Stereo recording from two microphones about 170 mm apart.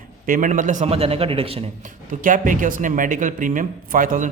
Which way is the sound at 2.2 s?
50° right (ahead or behind).